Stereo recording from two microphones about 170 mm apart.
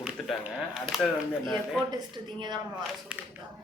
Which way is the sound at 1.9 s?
25° right (ahead or behind).